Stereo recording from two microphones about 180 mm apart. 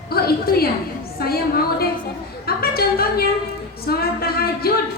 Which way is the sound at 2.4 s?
60° left (ahead or behind).